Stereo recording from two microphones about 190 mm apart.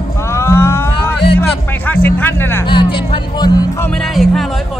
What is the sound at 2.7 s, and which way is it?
Speech, 25° left (ahead or behind).